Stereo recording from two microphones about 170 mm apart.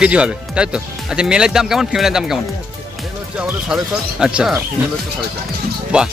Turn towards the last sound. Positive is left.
turn(degrees=-5)  # may be behind; listen again after turning